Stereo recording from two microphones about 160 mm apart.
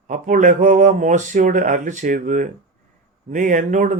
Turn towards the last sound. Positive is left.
turn(degrees=-50)  # may be behind; listen again after turning